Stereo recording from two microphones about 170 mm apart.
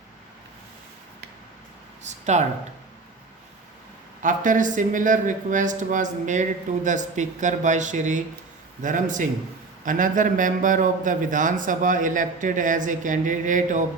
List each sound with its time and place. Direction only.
2.0 s speech: 45° right (ahead or behind)
4.2 s speech: 50° right (ahead or behind)